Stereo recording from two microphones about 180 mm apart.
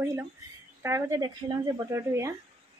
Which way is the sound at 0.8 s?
15° right (ahead or behind).